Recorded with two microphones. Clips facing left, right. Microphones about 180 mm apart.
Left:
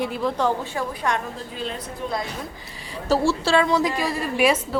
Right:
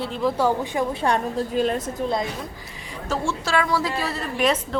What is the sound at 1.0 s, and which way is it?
Speech, 35° right (ahead or behind).